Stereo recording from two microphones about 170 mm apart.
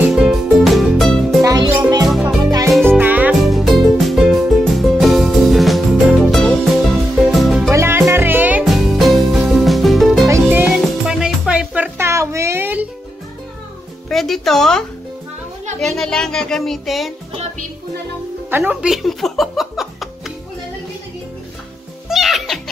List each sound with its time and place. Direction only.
0.1 s music: centre (ahead or behind)
1.4 s music: 25° right (ahead or behind); by 7.7 s centre (ahead or behind)
7.7 s music: 15° right (ahead or behind); by 10.3 s centre (ahead or behind)
10.3 s music: 10° right (ahead or behind)
14.0 s music: centre (ahead or behind)
18.5 s music: 10° right (ahead or behind)
22.1 s music: centre (ahead or behind)